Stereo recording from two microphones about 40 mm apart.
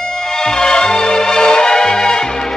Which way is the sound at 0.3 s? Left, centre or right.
Centre.